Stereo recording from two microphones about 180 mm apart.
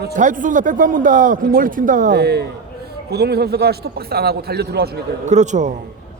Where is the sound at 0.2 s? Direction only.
45° right (ahead or behind); by 4.9 s 60° right (ahead or behind).